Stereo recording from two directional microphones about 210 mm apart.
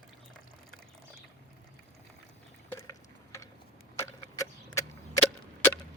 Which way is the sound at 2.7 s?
15° left (ahead or behind).